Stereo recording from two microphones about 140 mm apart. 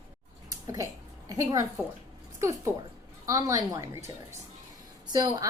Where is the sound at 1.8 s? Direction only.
10° right (ahead or behind).